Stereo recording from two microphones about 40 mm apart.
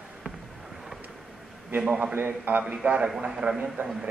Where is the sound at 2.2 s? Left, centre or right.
Right.